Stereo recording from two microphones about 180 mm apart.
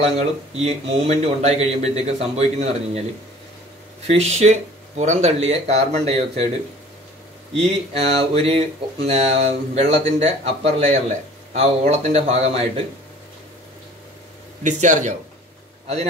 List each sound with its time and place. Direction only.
0.1 s speech: 35° right (ahead or behind)
4.1 s speech: 35° right (ahead or behind)
7.5 s speech: 35° right (ahead or behind)
14.6 s speech: 40° right (ahead or behind)